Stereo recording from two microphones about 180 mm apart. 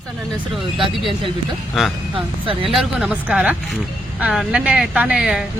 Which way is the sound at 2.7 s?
Centre (ahead or behind).